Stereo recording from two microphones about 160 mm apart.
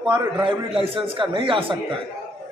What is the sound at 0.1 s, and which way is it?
A man's voice, 30° right (ahead or behind).